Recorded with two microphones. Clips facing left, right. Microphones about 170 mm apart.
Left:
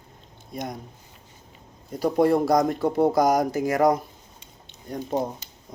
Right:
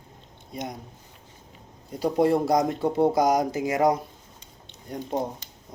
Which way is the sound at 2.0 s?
50° left (ahead or behind).